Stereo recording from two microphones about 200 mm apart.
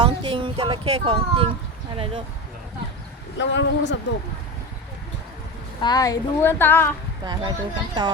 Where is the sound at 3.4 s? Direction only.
65° left (ahead or behind).